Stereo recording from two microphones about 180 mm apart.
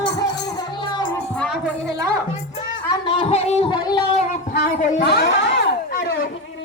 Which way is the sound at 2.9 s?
30° left (ahead or behind).